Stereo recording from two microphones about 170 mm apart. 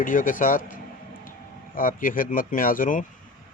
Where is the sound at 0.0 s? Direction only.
50° left (ahead or behind).